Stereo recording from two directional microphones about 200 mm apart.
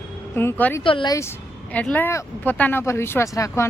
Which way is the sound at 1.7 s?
10° left (ahead or behind).